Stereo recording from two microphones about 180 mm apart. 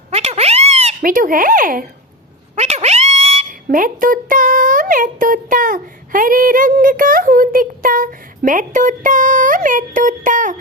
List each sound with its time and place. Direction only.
0.1 s a sound: 35° right (ahead or behind)
1.0 s speech: 50° right (ahead or behind)
2.6 s dog: 35° right (ahead or behind)
3.5 s speech: 50° right (ahead or behind)